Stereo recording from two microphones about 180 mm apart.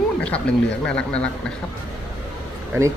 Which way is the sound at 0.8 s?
5° left (ahead or behind).